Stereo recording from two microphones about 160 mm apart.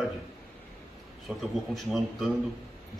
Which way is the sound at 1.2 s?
Centre (ahead or behind).